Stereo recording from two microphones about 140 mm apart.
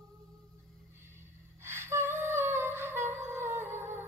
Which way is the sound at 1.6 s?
20° right (ahead or behind).